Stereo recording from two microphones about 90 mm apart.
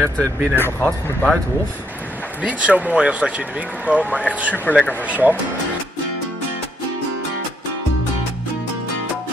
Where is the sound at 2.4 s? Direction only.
15° right (ahead or behind).